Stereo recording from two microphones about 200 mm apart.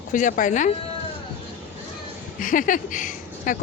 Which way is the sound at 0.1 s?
40° left (ahead or behind).